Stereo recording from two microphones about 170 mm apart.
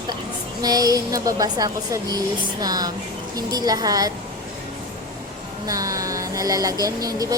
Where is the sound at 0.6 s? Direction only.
20° right (ahead or behind).